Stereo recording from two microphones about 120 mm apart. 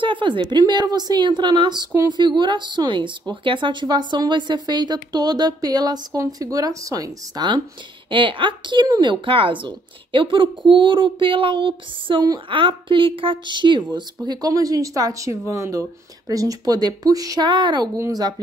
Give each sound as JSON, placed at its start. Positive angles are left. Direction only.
{"t": 0.0, "sound": "a woman's voice", "side_deg": -45}
{"t": 9.1, "sound": "a woman's voice", "side_deg": -45}